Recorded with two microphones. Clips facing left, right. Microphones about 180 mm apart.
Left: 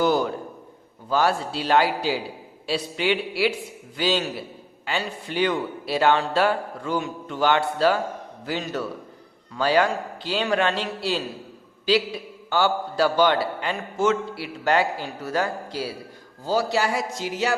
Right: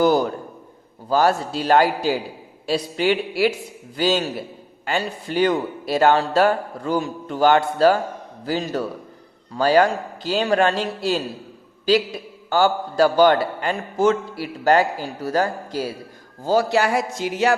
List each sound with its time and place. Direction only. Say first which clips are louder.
0.0 s a man's voice: right 4 dB; 40° right (ahead or behind)